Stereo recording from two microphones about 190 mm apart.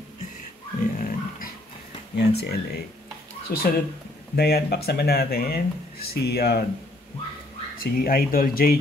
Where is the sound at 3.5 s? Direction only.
55° left (ahead or behind).